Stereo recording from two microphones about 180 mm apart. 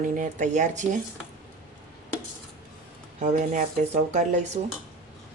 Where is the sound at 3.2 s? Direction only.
45° right (ahead or behind).